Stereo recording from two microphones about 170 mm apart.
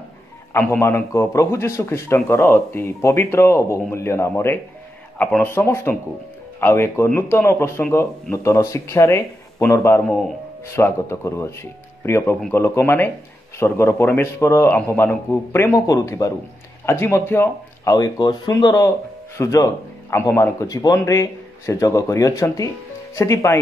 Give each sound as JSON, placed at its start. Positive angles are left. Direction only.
{"t": 0.5, "sound": "a man's voice", "side_deg": 15}